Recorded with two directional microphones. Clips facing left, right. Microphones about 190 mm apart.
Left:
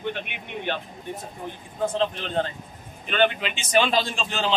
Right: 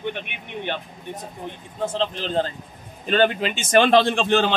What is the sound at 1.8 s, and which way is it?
A man's voice, 30° right (ahead or behind).